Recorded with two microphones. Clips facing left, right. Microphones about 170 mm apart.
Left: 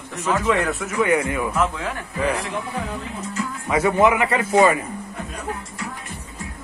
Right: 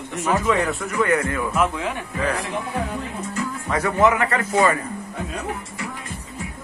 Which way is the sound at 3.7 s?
15° left (ahead or behind).